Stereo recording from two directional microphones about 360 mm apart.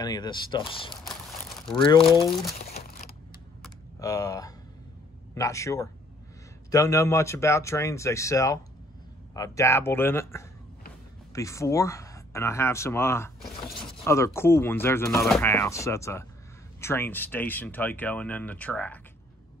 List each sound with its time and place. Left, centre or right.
0.0 s speech: centre
2.6 s crumpling: left
3.6 s a sound: centre
5.3 s speech: centre